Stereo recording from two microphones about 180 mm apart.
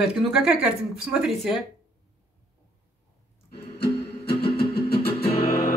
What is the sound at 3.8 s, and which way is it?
Music, 60° left (ahead or behind).